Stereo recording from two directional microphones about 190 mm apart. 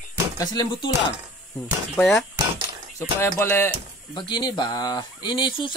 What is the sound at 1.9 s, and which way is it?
Speech, centre (ahead or behind).